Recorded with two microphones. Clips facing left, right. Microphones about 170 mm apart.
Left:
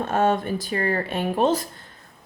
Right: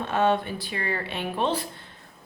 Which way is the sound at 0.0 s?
45° left (ahead or behind).